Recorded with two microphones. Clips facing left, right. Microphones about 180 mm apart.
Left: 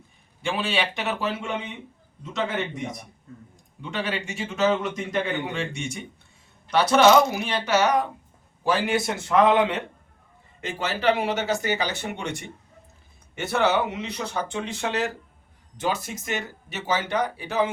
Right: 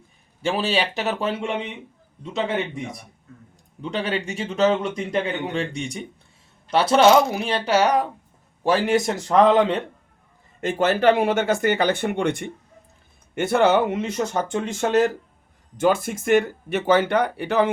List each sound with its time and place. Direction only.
0.4 s speech: 40° right (ahead or behind)
3.8 s speech: 35° right (ahead or behind)
10.6 s speech: 50° right (ahead or behind)